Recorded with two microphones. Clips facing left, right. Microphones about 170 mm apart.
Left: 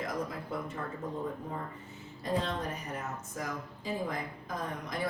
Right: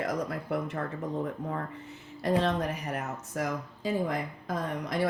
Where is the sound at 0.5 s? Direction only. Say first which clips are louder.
Right 8 dB; 75° right (ahead or behind).